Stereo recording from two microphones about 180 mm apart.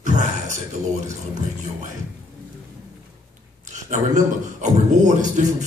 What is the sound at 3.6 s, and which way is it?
A man's voice, 40° right (ahead or behind).